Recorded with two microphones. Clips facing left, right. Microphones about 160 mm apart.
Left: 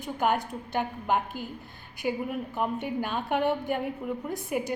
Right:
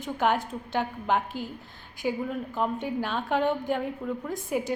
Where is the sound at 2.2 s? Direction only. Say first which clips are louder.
Right 1 dB; 15° left (ahead or behind).